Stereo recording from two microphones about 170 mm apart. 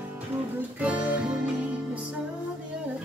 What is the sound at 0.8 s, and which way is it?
Music, 5° right (ahead or behind).